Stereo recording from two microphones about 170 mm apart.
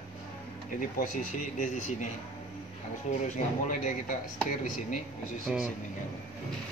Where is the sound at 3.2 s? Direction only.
45° left (ahead or behind).